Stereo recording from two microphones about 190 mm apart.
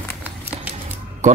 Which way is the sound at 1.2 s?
40° right (ahead or behind).